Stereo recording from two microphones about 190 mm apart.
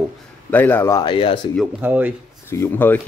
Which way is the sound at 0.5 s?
10° left (ahead or behind).